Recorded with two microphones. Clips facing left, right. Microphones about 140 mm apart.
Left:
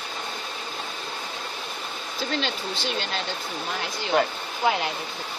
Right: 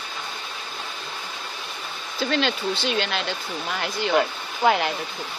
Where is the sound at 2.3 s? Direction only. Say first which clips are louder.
Right 6 dB; 70° right (ahead or behind).